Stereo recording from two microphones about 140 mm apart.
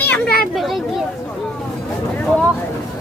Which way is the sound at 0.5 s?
Centre (ahead or behind).